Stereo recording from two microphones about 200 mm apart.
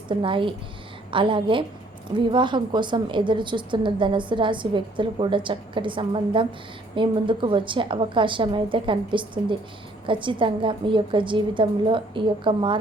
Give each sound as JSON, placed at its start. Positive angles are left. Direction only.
{"t": 0.1, "sound": "a woman's voice", "side_deg": -25}